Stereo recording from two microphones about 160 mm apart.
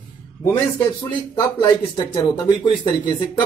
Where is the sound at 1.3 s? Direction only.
25° left (ahead or behind).